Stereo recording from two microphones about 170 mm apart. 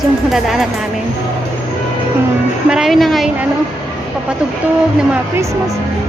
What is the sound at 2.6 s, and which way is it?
Speech, 5° right (ahead or behind).